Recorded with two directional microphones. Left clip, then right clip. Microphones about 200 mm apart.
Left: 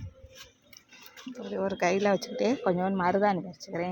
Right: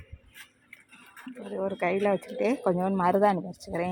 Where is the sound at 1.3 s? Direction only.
10° left (ahead or behind).